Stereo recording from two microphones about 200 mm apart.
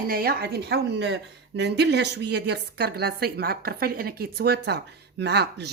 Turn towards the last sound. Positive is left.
turn(degrees=-55)  # may be behind; listen again after turning